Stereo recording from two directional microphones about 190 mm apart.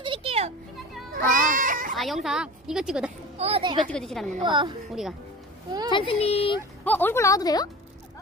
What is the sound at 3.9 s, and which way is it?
Speech, centre (ahead or behind).